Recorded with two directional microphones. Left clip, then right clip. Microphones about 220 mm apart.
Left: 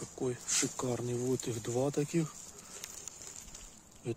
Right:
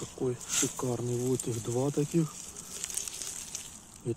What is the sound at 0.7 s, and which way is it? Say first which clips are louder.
Speech: right 2 dB; 20° left (ahead or behind).